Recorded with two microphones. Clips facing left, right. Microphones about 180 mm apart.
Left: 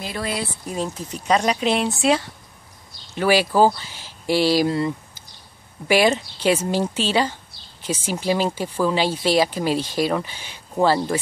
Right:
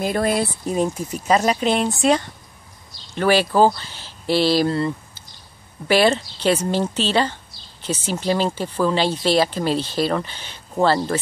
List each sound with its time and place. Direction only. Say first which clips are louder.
0.0 s speech: right 7 dB; 50° right (ahead or behind)
0.8 s speech: right 2 dB; 10° right (ahead or behind); by 11.0 s 10° left (ahead or behind)